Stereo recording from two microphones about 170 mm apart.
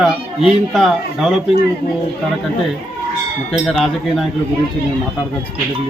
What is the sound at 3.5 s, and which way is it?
Speech, centre (ahead or behind).